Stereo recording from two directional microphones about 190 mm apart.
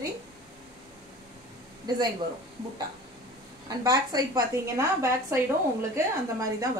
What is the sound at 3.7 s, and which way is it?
Speech, 20° right (ahead or behind).